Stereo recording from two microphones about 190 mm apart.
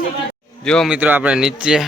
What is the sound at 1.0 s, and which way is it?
Speech, 10° right (ahead or behind).